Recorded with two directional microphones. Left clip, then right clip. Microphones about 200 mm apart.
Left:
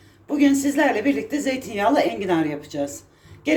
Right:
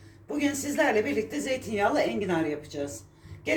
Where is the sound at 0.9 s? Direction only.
50° left (ahead or behind).